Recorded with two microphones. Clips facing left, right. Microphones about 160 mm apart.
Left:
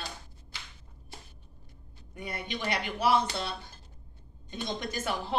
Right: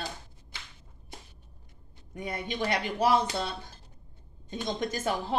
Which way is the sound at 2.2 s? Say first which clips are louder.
Right 3 dB; 40° right (ahead or behind).